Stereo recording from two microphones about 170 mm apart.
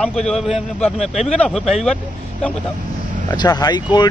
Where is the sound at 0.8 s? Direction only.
40° left (ahead or behind).